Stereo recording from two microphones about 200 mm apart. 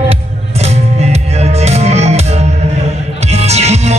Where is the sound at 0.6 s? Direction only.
35° right (ahead or behind).